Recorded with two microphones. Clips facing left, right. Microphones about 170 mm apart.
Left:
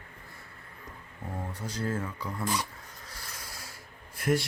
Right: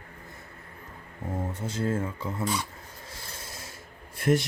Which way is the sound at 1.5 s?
25° right (ahead or behind).